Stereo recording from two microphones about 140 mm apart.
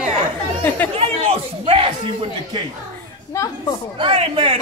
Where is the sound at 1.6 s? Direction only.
45° right (ahead or behind).